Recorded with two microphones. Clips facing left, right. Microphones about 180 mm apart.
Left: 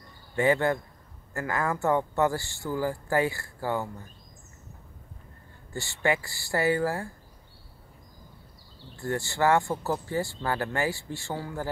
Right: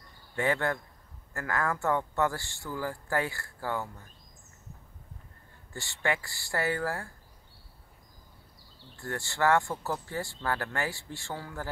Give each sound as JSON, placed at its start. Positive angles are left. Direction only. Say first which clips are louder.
{"t": 0.4, "sound": "speech", "louder": "left 5 dB", "side_deg": 10}
{"t": 5.8, "sound": "speech", "louder": "left 4 dB", "side_deg": 5}
{"t": 9.0, "sound": "speech", "louder": "left 3 dB", "side_deg": 5}